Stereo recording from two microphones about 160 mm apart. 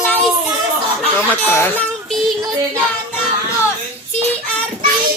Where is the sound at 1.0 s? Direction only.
5° left (ahead or behind).